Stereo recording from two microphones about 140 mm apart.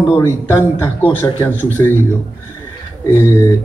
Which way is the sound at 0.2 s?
20° left (ahead or behind).